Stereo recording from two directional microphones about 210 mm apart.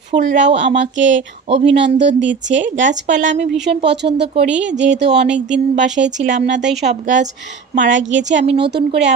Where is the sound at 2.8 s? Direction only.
35° right (ahead or behind).